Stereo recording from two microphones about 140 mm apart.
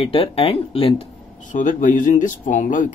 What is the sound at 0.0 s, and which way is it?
Speech, 40° left (ahead or behind).